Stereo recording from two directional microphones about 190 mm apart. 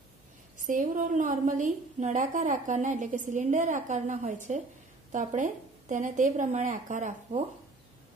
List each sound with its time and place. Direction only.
0.7 s a woman's voice: 45° right (ahead or behind)